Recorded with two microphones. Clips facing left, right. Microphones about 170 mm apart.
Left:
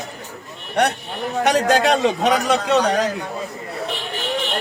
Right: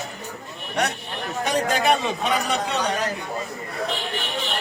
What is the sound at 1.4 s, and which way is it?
A man's voice, 80° left.